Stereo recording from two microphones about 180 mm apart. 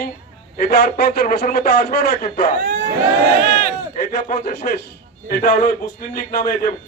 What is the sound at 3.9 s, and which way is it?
A man's voice, 50° left (ahead or behind).